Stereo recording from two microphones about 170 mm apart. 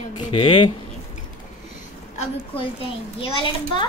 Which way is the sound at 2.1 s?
30° left (ahead or behind).